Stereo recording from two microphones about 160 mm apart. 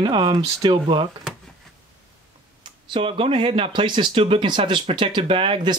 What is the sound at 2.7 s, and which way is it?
Speech, 30° right (ahead or behind).